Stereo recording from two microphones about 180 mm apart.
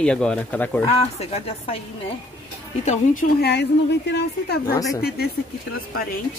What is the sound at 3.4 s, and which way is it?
A woman's voice, 70° left (ahead or behind).